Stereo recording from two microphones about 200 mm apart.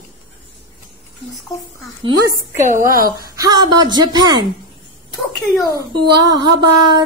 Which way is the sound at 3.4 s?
20° right (ahead or behind).